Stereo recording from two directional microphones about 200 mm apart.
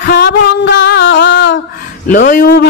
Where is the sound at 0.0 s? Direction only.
55° left (ahead or behind).